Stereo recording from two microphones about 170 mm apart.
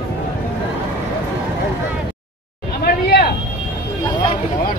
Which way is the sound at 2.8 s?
65° left (ahead or behind).